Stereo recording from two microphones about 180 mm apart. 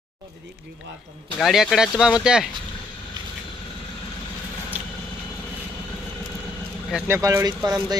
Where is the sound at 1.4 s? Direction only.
Centre (ahead or behind).